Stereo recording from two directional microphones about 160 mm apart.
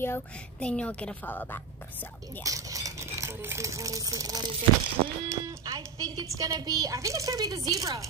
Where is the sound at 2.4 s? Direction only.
20° right (ahead or behind).